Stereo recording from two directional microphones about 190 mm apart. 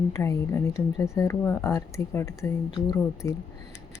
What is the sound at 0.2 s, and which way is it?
Speech, 15° left (ahead or behind).